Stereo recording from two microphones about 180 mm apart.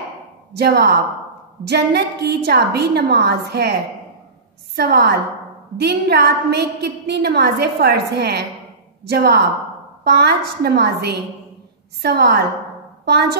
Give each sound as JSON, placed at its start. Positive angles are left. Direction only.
{"t": 0.5, "sound": "a woman's voice", "side_deg": -70}
{"t": 4.7, "sound": "a woman's voice", "side_deg": -65}